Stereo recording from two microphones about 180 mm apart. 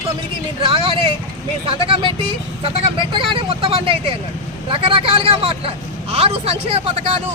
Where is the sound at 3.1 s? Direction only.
30° right (ahead or behind).